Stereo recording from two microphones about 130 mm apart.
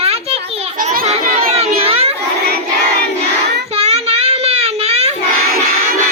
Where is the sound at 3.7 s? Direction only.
55° right (ahead or behind).